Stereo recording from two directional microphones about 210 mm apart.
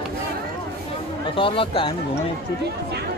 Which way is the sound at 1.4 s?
25° left (ahead or behind).